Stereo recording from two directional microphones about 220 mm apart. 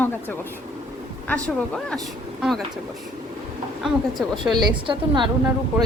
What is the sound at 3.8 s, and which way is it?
Speech, centre (ahead or behind).